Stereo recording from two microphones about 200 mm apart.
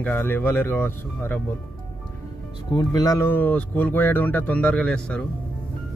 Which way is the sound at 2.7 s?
15° left (ahead or behind).